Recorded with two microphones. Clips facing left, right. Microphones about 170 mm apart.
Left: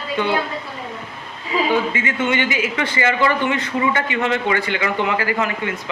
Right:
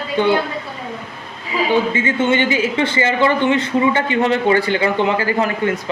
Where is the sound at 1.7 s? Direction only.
30° right (ahead or behind).